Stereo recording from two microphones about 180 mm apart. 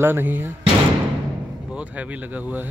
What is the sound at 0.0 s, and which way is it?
Speech, 10° right (ahead or behind).